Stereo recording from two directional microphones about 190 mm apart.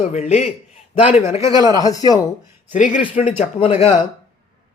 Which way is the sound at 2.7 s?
40° left (ahead or behind).